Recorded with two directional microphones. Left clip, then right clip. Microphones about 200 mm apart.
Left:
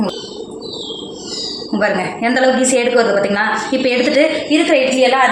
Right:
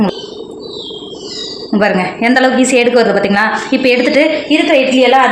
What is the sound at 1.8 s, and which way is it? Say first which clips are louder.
A woman's voice: right 4 dB; 45° right (ahead or behind).